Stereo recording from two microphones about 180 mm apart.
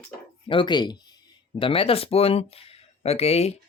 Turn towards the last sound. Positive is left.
turn(degrees=35)  # may be behind; listen again after turning